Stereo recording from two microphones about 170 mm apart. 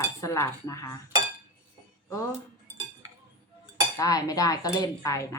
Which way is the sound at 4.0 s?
20° left (ahead or behind).